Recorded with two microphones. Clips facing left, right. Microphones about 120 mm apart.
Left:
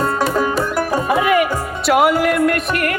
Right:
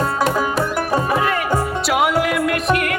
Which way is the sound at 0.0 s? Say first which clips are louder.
Left 1 dB; centre (ahead or behind).